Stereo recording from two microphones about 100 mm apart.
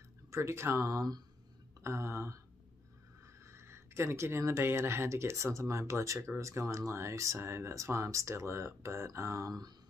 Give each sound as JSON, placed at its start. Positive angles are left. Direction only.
{"t": 0.3, "sound": "speech", "side_deg": -30}
{"t": 3.4, "sound": "speech", "side_deg": -25}